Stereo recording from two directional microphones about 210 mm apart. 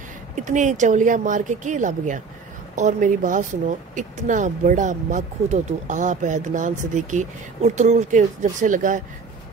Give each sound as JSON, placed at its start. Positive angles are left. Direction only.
{"t": 0.4, "sound": "a woman's voice", "side_deg": -35}